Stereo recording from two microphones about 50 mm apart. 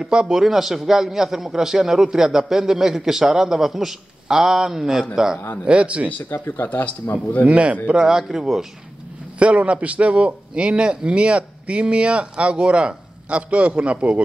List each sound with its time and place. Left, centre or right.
0.0 s a man's voice: centre
5.7 s a man's voice: right
6.3 s speech: left
7.4 s a man's voice: right
9.4 s a man's voice: right